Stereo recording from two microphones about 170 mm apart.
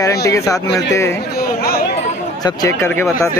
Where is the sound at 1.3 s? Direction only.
65° left (ahead or behind).